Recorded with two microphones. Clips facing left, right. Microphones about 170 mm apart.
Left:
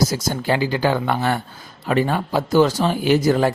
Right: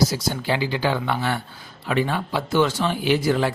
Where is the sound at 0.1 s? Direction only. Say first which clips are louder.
Left 3 dB; 45° left (ahead or behind).